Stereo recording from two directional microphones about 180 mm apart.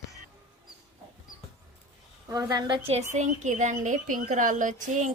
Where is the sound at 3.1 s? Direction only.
40° right (ahead or behind).